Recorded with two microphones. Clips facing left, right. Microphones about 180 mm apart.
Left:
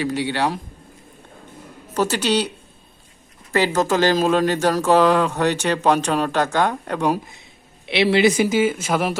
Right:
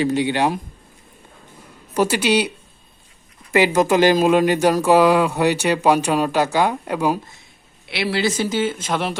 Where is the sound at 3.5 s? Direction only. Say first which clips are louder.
Right 3 dB; 15° right (ahead or behind).